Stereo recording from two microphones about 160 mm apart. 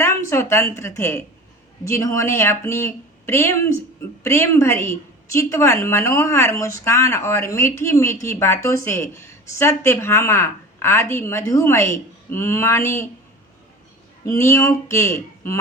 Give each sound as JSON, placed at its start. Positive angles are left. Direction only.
{"t": 0.0, "sound": "a woman's voice", "side_deg": 15}
{"t": 14.3, "sound": "speech", "side_deg": 15}